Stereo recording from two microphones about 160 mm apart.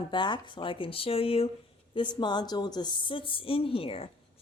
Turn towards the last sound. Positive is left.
turn(degrees=35)  # may be behind; listen again after turning